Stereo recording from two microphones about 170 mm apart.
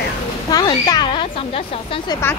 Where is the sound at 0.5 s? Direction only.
25° left (ahead or behind).